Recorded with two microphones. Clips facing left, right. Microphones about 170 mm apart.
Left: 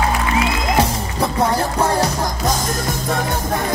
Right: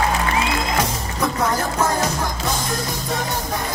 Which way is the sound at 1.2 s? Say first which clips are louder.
Left 3 dB; 35° left (ahead or behind).